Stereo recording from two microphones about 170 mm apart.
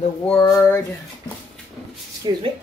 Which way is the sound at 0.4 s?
15° left (ahead or behind).